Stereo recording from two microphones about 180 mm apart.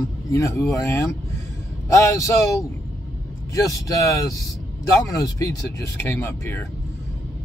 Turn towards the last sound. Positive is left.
turn(degrees=15)  # may be behind; listen again after turning